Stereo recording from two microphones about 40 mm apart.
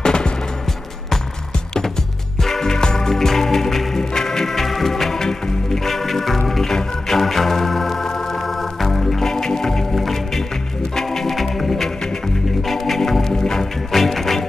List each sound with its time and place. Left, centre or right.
0.0 s music: left
2.4 s music: centre
12.6 s organ: centre
13.3 s music: centre
13.9 s music: centre